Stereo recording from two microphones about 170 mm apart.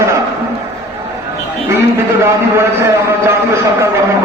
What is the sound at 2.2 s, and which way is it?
A man's voice, 15° right (ahead or behind).